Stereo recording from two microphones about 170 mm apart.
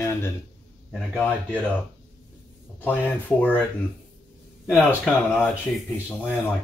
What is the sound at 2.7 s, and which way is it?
Speech, 10° left (ahead or behind).